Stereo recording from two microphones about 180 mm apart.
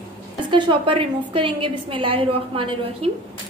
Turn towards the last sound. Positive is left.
turn(degrees=-30)  # may be behind; listen again after turning